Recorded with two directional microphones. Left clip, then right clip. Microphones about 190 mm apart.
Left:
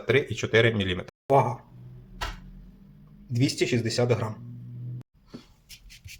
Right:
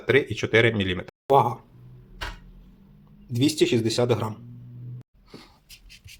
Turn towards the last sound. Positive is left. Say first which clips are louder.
# right 2 dB
turn(degrees=-20)  # may be behind; listen again after turning